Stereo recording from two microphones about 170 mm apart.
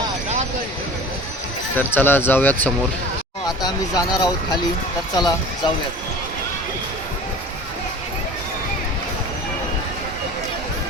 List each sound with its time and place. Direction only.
1.7 s speech: 10° left (ahead or behind)
3.6 s speech: 20° left (ahead or behind)